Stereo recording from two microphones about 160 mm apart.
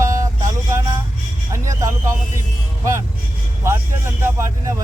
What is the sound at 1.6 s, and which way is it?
Speech, 20° right (ahead or behind).